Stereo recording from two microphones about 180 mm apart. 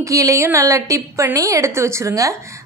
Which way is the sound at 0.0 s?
20° right (ahead or behind).